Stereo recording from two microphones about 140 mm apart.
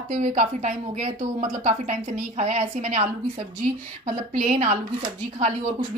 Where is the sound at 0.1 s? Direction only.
60° right (ahead or behind).